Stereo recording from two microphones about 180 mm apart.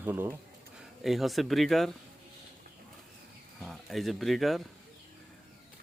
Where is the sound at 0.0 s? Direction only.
10° right (ahead or behind).